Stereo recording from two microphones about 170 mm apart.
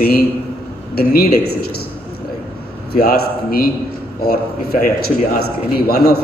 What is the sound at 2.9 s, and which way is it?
A man's voice, 65° left (ahead or behind).